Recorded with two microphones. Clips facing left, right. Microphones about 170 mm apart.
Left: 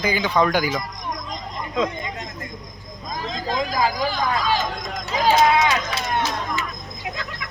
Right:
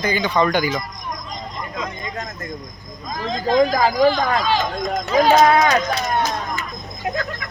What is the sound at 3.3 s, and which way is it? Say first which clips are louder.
Speech: right 10 dB; 40° right (ahead or behind).